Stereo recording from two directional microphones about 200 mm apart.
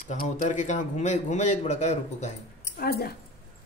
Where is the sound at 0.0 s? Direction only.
45° left (ahead or behind).